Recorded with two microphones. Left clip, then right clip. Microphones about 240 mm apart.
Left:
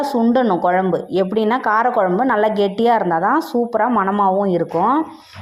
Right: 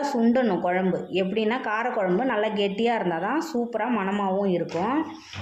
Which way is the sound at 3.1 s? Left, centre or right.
Centre.